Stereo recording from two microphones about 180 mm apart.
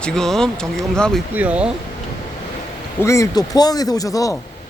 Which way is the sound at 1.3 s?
10° right (ahead or behind).